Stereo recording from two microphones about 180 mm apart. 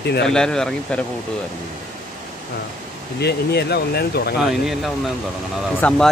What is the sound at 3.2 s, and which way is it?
Speech, 65° left (ahead or behind).